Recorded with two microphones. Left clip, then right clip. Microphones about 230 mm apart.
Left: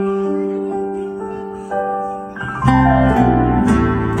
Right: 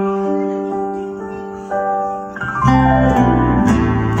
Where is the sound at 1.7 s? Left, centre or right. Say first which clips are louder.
Right 2 dB; centre.